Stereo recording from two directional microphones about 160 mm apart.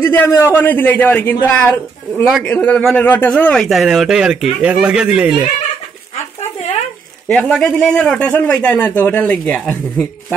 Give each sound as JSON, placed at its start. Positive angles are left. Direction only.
{"t": 0.0, "sound": "a man's voice", "side_deg": 10}
{"t": 2.2, "sound": "speech", "side_deg": 0}
{"t": 7.2, "sound": "a man's voice", "side_deg": 5}